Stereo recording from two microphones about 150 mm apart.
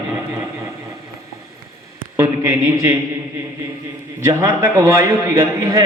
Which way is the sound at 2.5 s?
20° right (ahead or behind).